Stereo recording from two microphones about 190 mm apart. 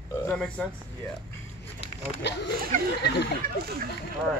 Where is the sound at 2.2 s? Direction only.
65° left (ahead or behind).